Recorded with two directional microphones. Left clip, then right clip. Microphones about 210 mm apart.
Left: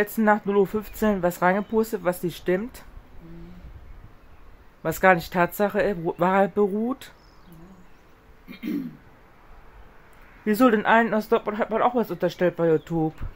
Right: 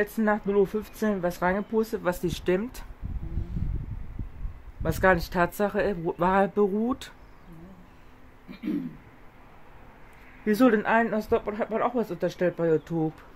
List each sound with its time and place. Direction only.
0.0 s speech: 20° left (ahead or behind)
4.8 s speech: 10° left (ahead or behind)
10.4 s speech: 10° left (ahead or behind)